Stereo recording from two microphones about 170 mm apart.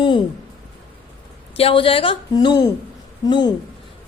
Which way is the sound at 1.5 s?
35° left (ahead or behind).